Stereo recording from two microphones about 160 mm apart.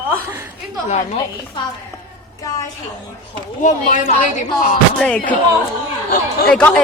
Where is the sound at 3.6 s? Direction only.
55° left (ahead or behind).